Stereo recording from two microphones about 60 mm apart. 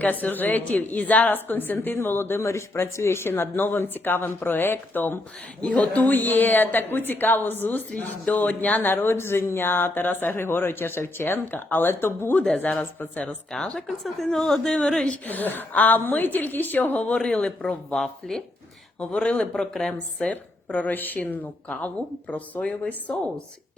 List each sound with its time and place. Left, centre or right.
0.0 s a woman's voice: left
2.4 s speech: left
5.6 s a woman's voice: centre; by 12.4 s left
12.5 s a woman's voice: left
13.5 s a woman's voice: centre
15.0 s speech: left
17.2 s speech: centre
18.9 s speech: centre
20.2 s a woman's voice: left